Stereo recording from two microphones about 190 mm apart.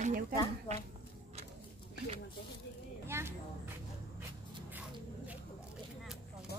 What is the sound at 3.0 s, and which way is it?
Vehicle, 15° right (ahead or behind).